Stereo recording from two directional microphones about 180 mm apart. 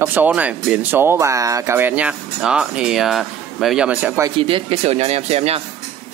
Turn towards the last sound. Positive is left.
turn(degrees=-35)  # may be behind; listen again after turning